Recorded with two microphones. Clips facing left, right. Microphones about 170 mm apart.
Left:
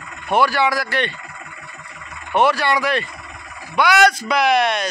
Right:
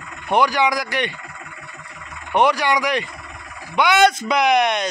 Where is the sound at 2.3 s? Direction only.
15° right (ahead or behind).